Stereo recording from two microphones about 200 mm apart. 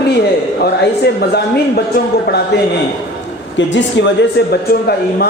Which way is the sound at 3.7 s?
65° left (ahead or behind).